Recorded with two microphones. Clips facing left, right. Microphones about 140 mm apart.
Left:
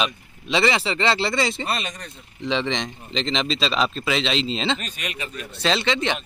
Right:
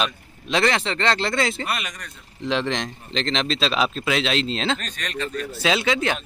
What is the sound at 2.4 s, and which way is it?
Speech, centre (ahead or behind).